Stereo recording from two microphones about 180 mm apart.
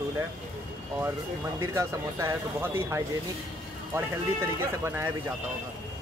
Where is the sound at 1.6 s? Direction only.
15° right (ahead or behind).